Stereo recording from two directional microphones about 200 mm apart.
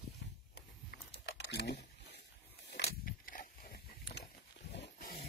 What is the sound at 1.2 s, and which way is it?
Typing, 55° left (ahead or behind).